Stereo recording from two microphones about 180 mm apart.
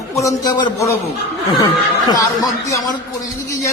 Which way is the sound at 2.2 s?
20° left (ahead or behind).